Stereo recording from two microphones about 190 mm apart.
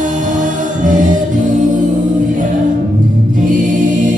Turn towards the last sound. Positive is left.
turn(degrees=-45)  # may be behind; listen again after turning